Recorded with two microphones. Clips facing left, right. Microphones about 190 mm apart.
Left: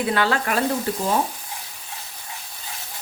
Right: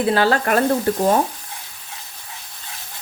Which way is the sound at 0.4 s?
50° right (ahead or behind).